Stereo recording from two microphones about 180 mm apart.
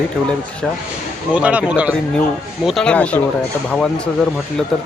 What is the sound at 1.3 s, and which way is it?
Speech, 5° right (ahead or behind).